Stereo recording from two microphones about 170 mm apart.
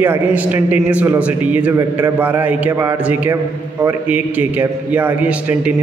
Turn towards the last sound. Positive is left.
turn(degrees=-10)  # may be behind; listen again after turning